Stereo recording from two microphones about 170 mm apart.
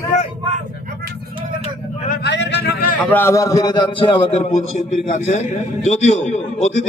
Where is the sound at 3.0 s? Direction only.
10° left (ahead or behind).